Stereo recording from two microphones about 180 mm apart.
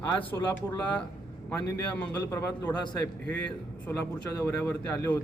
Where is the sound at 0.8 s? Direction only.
5° left (ahead or behind).